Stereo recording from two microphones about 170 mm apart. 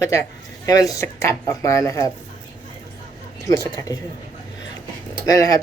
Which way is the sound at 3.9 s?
20° left (ahead or behind).